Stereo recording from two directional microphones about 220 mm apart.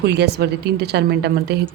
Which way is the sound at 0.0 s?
50° right (ahead or behind).